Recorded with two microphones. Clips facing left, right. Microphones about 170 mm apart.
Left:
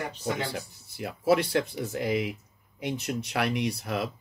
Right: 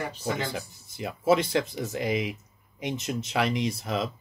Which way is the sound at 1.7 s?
20° right (ahead or behind).